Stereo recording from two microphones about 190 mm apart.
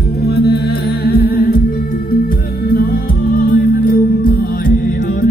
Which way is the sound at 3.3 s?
50° left (ahead or behind).